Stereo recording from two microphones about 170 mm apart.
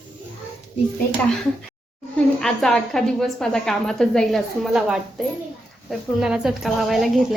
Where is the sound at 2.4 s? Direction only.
5° left (ahead or behind).